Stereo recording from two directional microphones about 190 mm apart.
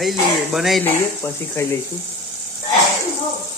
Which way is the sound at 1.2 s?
15° left (ahead or behind).